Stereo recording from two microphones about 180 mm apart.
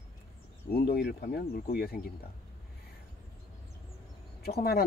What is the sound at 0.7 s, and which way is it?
Speech, 60° left (ahead or behind).